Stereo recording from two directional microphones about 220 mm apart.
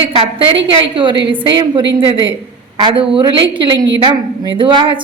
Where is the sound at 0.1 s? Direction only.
25° right (ahead or behind).